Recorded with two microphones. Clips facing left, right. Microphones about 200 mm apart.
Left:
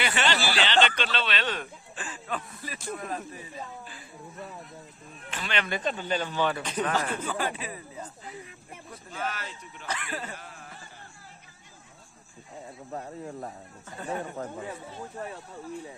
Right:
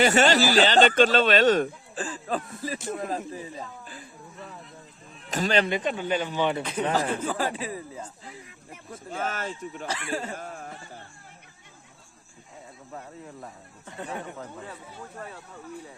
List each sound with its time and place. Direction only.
0.0 s speech: 45° right (ahead or behind)
2.6 s speech: 25° right (ahead or behind)
5.3 s speech: 40° right (ahead or behind)
5.6 s speech: 15° right (ahead or behind)
6.8 s speech: 30° right (ahead or behind)
8.3 s snake: 30° left (ahead or behind)
8.9 s speech: 45° right (ahead or behind)
9.8 s speech: 30° right (ahead or behind)
10.3 s a sound: 45° right (ahead or behind)
12.9 s speech: 45° left (ahead or behind)